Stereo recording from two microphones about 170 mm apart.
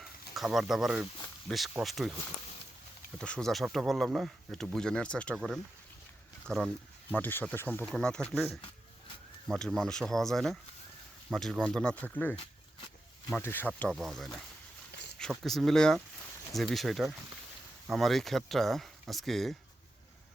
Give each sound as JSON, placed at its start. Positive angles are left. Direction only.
{"t": 0.0, "sound": "speech", "side_deg": 0}
{"t": 3.2, "sound": "speech", "side_deg": 5}
{"t": 6.5, "sound": "speech", "side_deg": 5}
{"t": 9.5, "sound": "speech", "side_deg": 0}
{"t": 14.9, "sound": "a sound", "side_deg": 80}
{"t": 15.2, "sound": "speech", "side_deg": 0}